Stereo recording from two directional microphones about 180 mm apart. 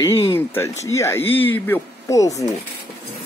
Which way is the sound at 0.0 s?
15° left (ahead or behind).